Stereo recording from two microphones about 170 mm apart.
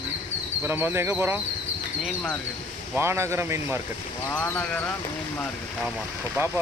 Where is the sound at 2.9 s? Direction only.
15° right (ahead or behind).